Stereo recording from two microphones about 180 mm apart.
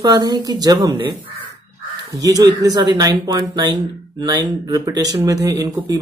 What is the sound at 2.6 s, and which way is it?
Speech, 20° right (ahead or behind).